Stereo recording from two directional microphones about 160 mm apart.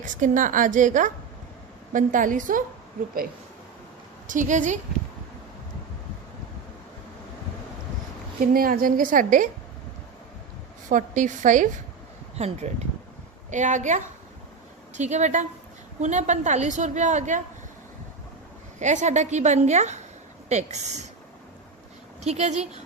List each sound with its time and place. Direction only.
0.0 s a woman's voice: 55° right (ahead or behind)
4.3 s a woman's voice: 50° right (ahead or behind)
8.4 s a woman's voice: 65° right (ahead or behind)
10.8 s a woman's voice: 55° right (ahead or behind)
12.4 s a woman's voice: 40° right (ahead or behind)
18.8 s a woman's voice: 50° right (ahead or behind)
22.2 s a woman's voice: 45° right (ahead or behind)